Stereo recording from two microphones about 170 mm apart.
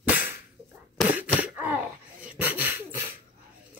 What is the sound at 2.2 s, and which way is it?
Beatboxing, 10° right (ahead or behind).